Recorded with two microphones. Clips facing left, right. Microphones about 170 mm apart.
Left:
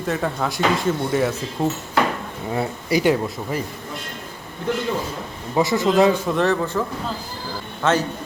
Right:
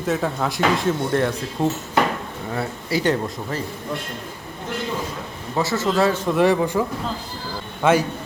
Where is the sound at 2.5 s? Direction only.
15° left (ahead or behind).